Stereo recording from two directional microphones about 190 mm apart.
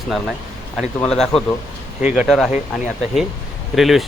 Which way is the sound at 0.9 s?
5° left (ahead or behind).